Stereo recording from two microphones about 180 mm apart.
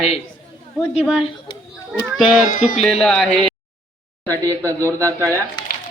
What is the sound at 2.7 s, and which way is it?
Speech, centre (ahead or behind).